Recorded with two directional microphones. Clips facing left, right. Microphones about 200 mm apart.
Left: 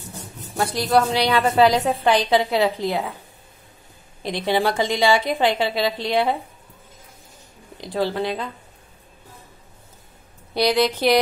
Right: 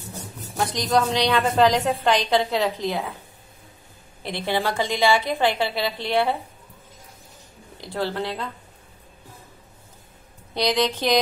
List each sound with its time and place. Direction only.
0.6 s a woman's voice: 10° left (ahead or behind)
4.2 s a woman's voice: 15° left (ahead or behind)
7.7 s a woman's voice: 15° left (ahead or behind)
10.5 s a woman's voice: 10° left (ahead or behind)